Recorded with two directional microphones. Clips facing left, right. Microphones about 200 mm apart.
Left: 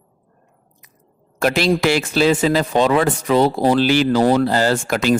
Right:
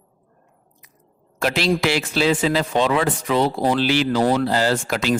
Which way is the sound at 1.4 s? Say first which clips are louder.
Left 3 dB; 50° left (ahead or behind).